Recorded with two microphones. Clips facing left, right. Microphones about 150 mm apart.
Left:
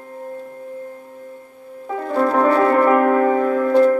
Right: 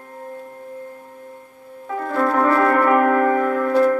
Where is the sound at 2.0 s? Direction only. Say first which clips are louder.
Left 2 dB; 20° left (ahead or behind).